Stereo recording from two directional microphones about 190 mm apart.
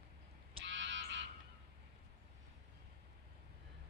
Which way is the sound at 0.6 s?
70° right (ahead or behind).